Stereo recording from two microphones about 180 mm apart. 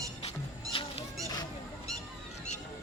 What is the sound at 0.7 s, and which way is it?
Fowl, 30° left (ahead or behind).